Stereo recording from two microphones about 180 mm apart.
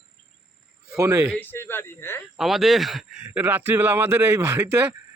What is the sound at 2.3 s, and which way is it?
Speech, centre (ahead or behind).